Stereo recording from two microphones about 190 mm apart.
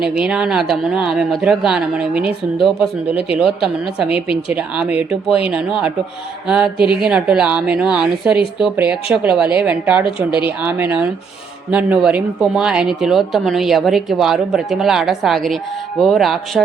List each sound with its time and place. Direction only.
0.0 s a woman's voice: 5° right (ahead or behind)